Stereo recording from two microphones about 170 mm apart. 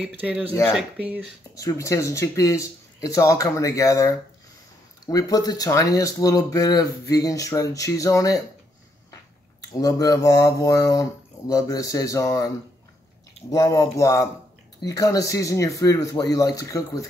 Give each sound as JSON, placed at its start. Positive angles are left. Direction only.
{"t": 0.0, "sound": "speech", "side_deg": -10}
{"t": 1.5, "sound": "speech", "side_deg": 20}
{"t": 9.6, "sound": "speech", "side_deg": 20}
{"t": 13.5, "sound": "speech", "side_deg": 20}